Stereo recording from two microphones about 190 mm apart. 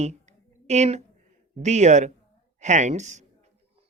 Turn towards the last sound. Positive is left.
turn(degrees=-40)  # may be behind; listen again after turning